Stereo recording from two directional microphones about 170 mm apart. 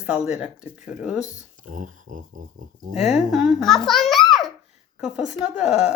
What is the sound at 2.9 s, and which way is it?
Speech, centre (ahead or behind).